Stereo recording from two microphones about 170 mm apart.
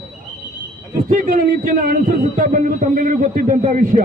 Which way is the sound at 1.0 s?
50° right (ahead or behind).